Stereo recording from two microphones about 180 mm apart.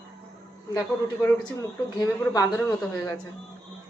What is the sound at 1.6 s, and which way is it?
Speech, 20° left (ahead or behind).